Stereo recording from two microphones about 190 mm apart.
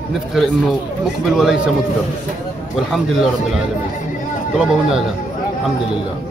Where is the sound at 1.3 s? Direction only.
Centre (ahead or behind).